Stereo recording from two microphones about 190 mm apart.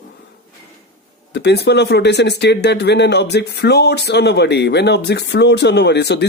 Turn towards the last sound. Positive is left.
turn(degrees=60)  # may be behind; listen again after turning